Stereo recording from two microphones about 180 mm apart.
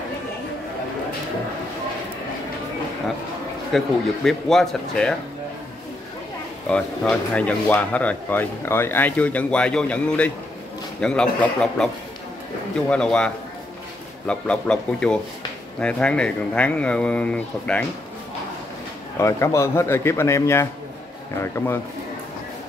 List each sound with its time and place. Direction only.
3.7 s speech: centre (ahead or behind)
6.7 s speech: 5° left (ahead or behind)
19.1 s speech: 15° left (ahead or behind)